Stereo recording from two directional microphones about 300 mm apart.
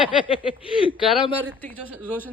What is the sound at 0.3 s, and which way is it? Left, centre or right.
Speech, centre.